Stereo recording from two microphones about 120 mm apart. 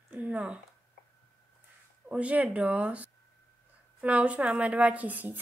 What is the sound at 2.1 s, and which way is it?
A woman's voice, 10° right (ahead or behind).